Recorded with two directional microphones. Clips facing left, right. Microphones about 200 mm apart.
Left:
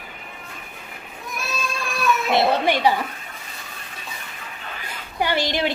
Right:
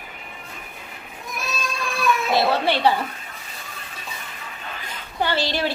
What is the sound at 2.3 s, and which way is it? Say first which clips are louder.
Speech: left 2 dB; 20° left (ahead or behind).